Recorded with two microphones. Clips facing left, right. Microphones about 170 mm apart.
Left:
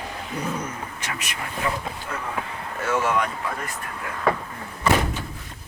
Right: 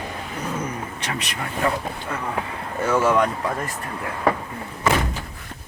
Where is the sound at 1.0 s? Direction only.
35° right (ahead or behind).